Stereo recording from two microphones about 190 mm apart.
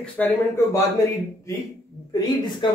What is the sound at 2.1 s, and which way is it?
Speech, 25° left (ahead or behind).